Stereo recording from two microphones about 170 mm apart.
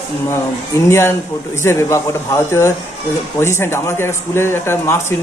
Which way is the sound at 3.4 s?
15° left (ahead or behind).